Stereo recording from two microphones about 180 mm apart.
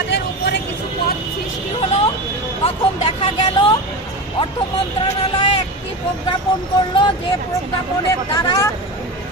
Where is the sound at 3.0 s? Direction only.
30° left (ahead or behind).